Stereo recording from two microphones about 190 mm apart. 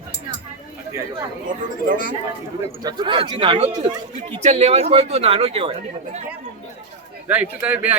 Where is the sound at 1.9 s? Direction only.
45° right (ahead or behind).